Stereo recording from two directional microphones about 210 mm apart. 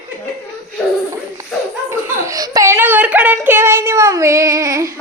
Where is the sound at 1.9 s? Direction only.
15° right (ahead or behind).